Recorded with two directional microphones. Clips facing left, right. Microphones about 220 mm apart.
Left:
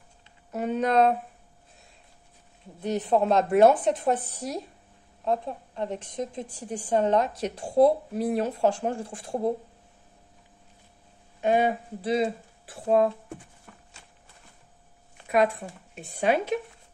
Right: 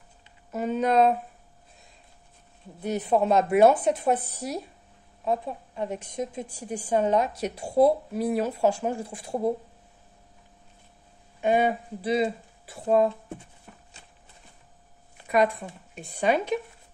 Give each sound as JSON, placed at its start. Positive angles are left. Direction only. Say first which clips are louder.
{"t": 0.5, "sound": "speech", "louder": "right 1 dB", "side_deg": 0}
{"t": 2.8, "sound": "a woman's voice", "louder": "even", "side_deg": -5}
{"t": 11.4, "sound": "speech", "louder": "even", "side_deg": 0}
{"t": 13.7, "sound": "horse", "louder": "right 2 dB", "side_deg": -15}
{"t": 15.2, "sound": "speech", "louder": "even", "side_deg": 5}